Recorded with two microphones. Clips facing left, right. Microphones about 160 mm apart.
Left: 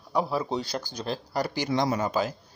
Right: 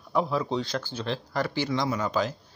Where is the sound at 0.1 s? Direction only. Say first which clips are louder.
Right 1 dB; 5° left (ahead or behind).